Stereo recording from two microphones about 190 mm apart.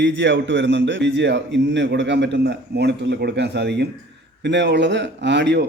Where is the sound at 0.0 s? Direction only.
70° right (ahead or behind).